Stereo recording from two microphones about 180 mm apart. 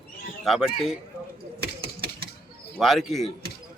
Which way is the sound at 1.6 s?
60° right (ahead or behind).